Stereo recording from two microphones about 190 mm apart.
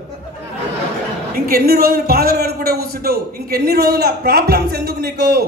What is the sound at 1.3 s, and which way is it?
A man's voice, 55° right (ahead or behind).